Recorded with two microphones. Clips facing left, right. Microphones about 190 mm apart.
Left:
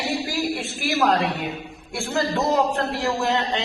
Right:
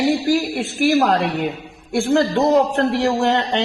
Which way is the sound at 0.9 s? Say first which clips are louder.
Right 3 dB; 55° right (ahead or behind).